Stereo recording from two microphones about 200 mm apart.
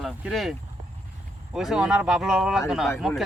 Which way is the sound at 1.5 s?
Centre (ahead or behind).